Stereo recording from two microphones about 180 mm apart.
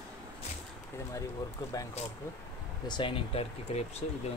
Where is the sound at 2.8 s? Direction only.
25° left (ahead or behind).